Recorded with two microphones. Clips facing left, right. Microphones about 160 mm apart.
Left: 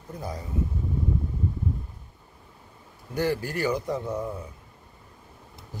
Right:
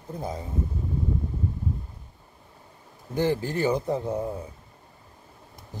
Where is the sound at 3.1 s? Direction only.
20° right (ahead or behind).